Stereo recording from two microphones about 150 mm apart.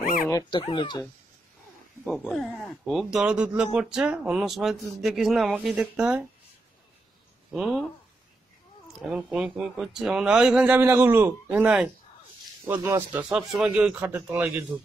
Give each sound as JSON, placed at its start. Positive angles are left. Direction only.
{"t": 0.0, "sound": "dog", "side_deg": 70}
{"t": 0.5, "sound": "speech", "side_deg": 35}
{"t": 2.0, "sound": "speech", "side_deg": 5}
{"t": 7.5, "sound": "speech", "side_deg": 0}
{"t": 9.0, "sound": "speech", "side_deg": -5}